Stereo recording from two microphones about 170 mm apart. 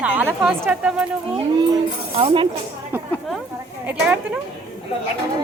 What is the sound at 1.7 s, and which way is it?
Speech, 30° right (ahead or behind).